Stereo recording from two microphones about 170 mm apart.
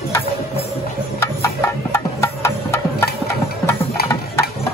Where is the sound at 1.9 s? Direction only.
15° left (ahead or behind).